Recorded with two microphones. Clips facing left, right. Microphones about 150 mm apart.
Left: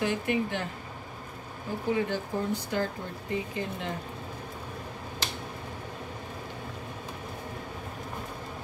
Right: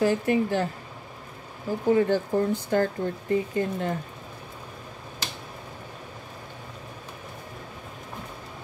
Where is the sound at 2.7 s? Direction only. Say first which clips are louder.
Right 7 dB; 50° right (ahead or behind).